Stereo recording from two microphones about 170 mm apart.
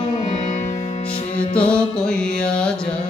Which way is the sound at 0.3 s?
45° left (ahead or behind).